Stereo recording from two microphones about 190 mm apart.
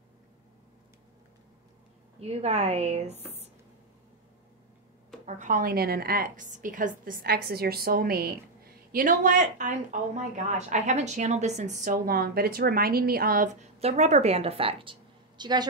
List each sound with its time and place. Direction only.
2.1 s speech: 30° right (ahead or behind)
5.2 s a woman's voice: 40° right (ahead or behind); by 15.6 s 25° right (ahead or behind)